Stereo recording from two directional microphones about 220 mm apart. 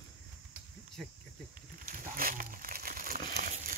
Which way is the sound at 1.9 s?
40° right (ahead or behind).